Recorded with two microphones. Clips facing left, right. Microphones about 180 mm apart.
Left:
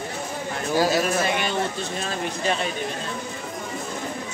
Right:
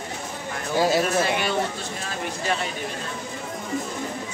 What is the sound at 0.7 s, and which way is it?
Speech, 25° right (ahead or behind).